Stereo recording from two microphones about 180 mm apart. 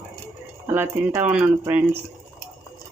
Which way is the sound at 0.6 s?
10° right (ahead or behind).